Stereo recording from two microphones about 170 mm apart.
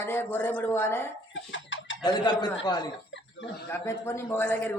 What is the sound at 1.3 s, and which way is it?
Chicken, 90° left.